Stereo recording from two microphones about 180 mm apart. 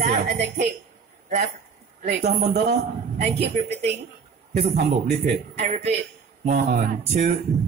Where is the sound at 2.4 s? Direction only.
40° right (ahead or behind).